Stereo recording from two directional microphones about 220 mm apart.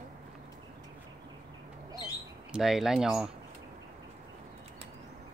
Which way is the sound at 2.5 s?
Centre (ahead or behind).